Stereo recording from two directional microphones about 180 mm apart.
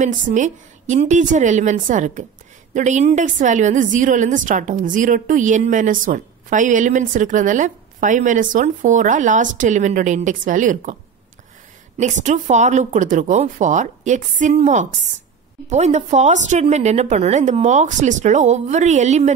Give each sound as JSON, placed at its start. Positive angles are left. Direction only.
{"t": 0.0, "sound": "a woman's voice", "side_deg": -45}
{"t": 12.0, "sound": "a woman's voice", "side_deg": -45}